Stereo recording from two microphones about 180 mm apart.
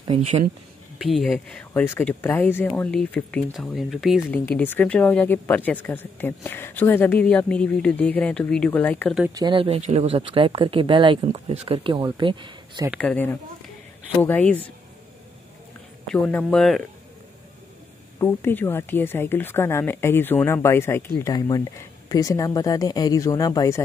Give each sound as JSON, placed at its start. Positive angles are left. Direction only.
{"t": 0.0, "sound": "speech", "side_deg": -30}
{"t": 0.9, "sound": "speech", "side_deg": 0}
{"t": 1.7, "sound": "speech", "side_deg": 15}
{"t": 4.5, "sound": "speech", "side_deg": 10}
{"t": 9.3, "sound": "speech", "side_deg": -25}
{"t": 9.8, "sound": "speech", "side_deg": -40}
{"t": 13.0, "sound": "speech", "side_deg": 10}
{"t": 16.1, "sound": "speech", "side_deg": 5}
{"t": 18.2, "sound": "speech", "side_deg": 10}